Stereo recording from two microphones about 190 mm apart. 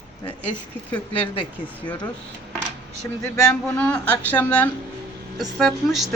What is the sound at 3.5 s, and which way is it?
A woman's voice, 5° left (ahead or behind).